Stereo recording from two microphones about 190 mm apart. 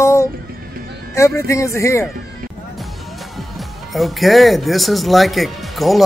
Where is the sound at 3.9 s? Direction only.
Centre (ahead or behind).